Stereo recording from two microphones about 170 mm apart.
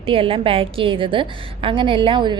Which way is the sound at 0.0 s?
30° right (ahead or behind).